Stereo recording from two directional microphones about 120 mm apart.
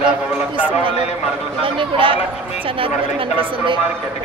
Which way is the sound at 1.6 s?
45° right (ahead or behind).